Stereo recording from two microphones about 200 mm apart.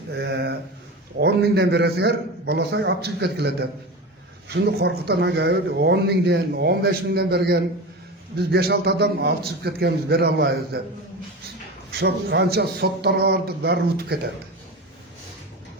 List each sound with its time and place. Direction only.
0.1 s a man's voice: 60° right (ahead or behind)